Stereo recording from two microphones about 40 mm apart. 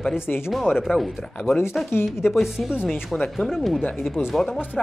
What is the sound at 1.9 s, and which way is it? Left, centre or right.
Speech, left.